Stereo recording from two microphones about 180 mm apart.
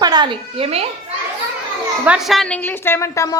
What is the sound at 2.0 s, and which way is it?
A woman's voice, 5° right (ahead or behind).